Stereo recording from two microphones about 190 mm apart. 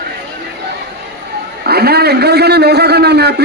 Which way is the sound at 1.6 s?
55° right (ahead or behind).